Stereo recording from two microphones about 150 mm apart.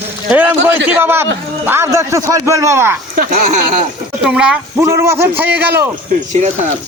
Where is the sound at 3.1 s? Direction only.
65° right (ahead or behind).